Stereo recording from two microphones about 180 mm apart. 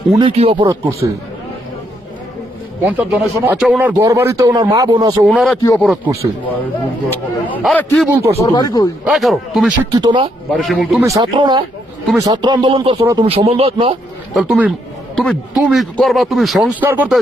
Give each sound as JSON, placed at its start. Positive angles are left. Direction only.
{"t": 0.2, "sound": "speech", "side_deg": -30}
{"t": 0.7, "sound": "speech", "side_deg": -15}
{"t": 2.8, "sound": "speech", "side_deg": -5}
{"t": 5.2, "sound": "speech", "side_deg": 0}
{"t": 7.6, "sound": "a man's voice", "side_deg": 10}
{"t": 8.0, "sound": "speech", "side_deg": -10}
{"t": 8.4, "sound": "speech", "side_deg": 25}
{"t": 9.0, "sound": "speech", "side_deg": 0}
{"t": 9.7, "sound": "speech", "side_deg": -25}
{"t": 10.5, "sound": "speech", "side_deg": 0}
{"t": 11.0, "sound": "speech", "side_deg": -20}
{"t": 13.0, "sound": "speech", "side_deg": -20}
{"t": 13.3, "sound": "speech", "side_deg": -35}
{"t": 14.3, "sound": "speech", "side_deg": -5}